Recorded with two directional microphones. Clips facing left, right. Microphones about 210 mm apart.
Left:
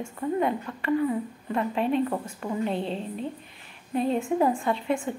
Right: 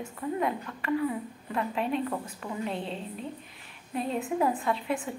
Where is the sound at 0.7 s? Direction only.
25° left (ahead or behind).